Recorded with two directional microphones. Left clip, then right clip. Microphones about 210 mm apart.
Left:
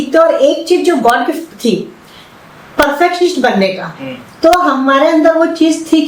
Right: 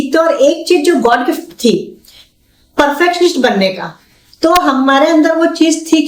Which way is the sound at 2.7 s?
55° right (ahead or behind).